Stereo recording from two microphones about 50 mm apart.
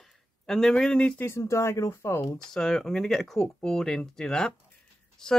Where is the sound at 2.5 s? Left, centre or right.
Centre.